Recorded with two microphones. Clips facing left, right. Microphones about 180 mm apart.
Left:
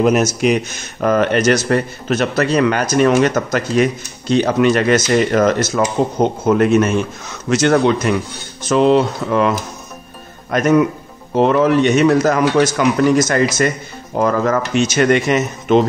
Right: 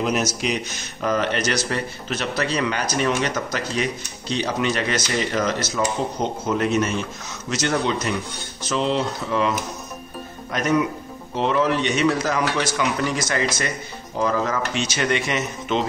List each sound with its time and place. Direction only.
0.0 s speech: 50° left (ahead or behind)